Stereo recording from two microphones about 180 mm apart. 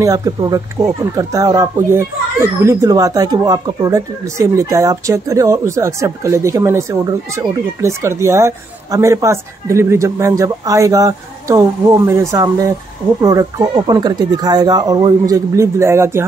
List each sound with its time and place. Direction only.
0.0 s speech: 20° right (ahead or behind)